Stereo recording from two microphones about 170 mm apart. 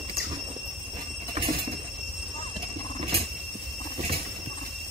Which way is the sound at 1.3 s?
30° right (ahead or behind).